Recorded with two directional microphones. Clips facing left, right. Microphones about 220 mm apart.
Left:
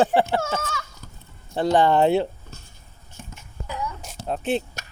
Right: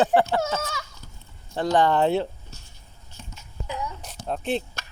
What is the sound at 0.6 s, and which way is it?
Fowl, 15° right (ahead or behind).